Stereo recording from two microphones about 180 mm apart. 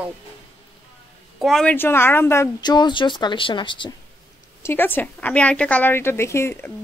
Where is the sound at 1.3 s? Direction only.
Centre (ahead or behind); by 3.9 s 25° left (ahead or behind).